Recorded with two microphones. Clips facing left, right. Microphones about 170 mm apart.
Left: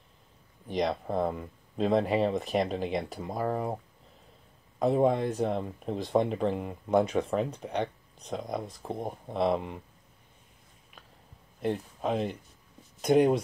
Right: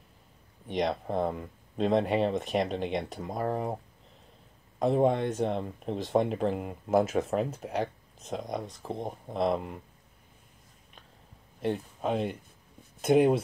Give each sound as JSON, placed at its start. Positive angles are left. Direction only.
{"t": 0.7, "sound": "speech", "side_deg": 0}
{"t": 11.6, "sound": "speech", "side_deg": 0}